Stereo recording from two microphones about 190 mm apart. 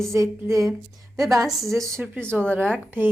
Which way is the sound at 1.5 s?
Centre (ahead or behind).